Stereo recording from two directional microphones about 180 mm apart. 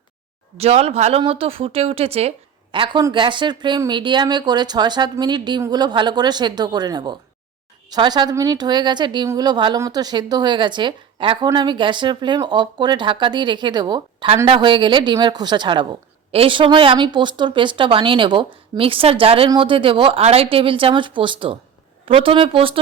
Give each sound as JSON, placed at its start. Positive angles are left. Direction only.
{"t": 0.5, "sound": "a woman's voice", "side_deg": -35}